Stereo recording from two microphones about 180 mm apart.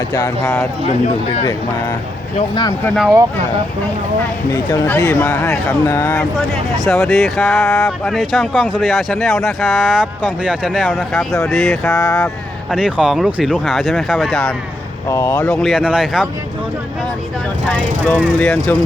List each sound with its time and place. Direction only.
0.9 s a man's voice: 35° left (ahead or behind)
2.8 s speech: centre (ahead or behind)
4.5 s speech: 20° left (ahead or behind)
6.8 s speech: centre (ahead or behind)
15.1 s speech: 15° left (ahead or behind); by 16.2 s 5° right (ahead or behind)
18.0 s speech: 5° left (ahead or behind)